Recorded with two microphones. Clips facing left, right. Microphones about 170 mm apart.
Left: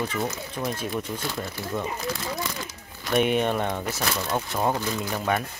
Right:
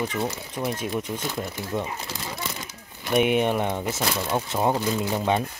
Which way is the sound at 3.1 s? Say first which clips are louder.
Right 1 dB; 15° right (ahead or behind).